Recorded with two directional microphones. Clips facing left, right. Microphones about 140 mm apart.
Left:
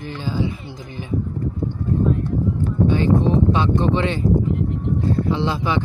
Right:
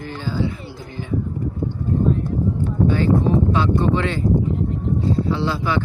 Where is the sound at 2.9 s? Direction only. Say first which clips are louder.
Even; 20° left (ahead or behind).